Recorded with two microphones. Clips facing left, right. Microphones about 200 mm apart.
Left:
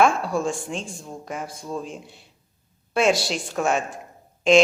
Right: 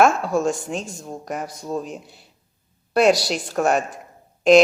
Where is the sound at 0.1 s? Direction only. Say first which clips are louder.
Right 3 dB; centre (ahead or behind).